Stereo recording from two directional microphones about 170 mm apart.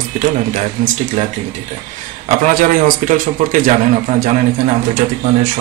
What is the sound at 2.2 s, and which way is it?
Speech, 55° right (ahead or behind).